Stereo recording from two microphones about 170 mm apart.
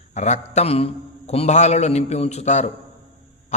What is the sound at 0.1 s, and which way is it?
A man's voice, 40° left (ahead or behind).